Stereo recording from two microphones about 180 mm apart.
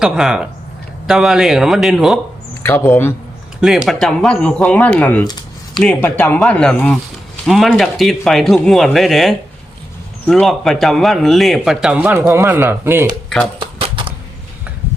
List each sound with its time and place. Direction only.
0.0 s a man's voice: 5° right (ahead or behind)
2.6 s speech: 15° left (ahead or behind)
3.6 s speech: 5° right (ahead or behind)
5.2 s a sound: 20° left (ahead or behind)
5.8 s a man's voice: 10° left (ahead or behind); by 13.1 s 15° right (ahead or behind)
13.6 s a sound: 30° right (ahead or behind)